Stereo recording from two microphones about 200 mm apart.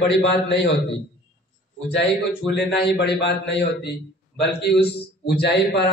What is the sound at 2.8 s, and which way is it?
A man's voice, 55° left (ahead or behind).